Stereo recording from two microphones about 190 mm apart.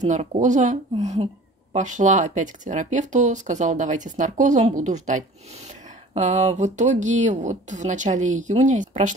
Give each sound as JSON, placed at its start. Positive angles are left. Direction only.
{"t": 0.0, "sound": "speech", "side_deg": -35}